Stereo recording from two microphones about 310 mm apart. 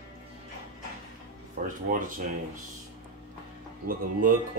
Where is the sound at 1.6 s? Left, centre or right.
Right.